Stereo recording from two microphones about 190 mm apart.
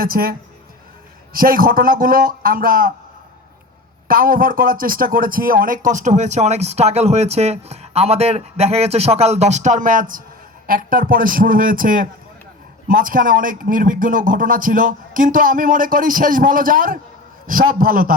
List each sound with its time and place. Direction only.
0.0 s speech: 50° right (ahead or behind)
4.1 s speech: 50° right (ahead or behind)